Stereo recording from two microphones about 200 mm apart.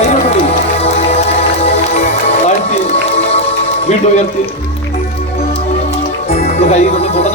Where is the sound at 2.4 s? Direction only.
30° left (ahead or behind).